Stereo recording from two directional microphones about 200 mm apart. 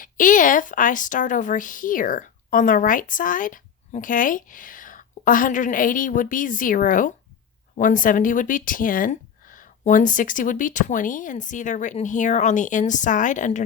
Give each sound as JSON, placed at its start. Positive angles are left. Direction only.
{"t": 0.0, "sound": "speech", "side_deg": 40}